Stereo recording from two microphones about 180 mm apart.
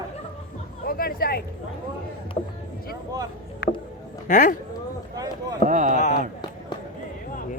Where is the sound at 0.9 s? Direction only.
55° left (ahead or behind).